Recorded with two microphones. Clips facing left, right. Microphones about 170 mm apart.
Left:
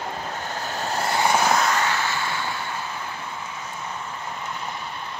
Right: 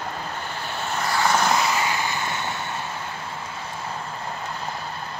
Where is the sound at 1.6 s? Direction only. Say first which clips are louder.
Left 1 dB; 10° right (ahead or behind).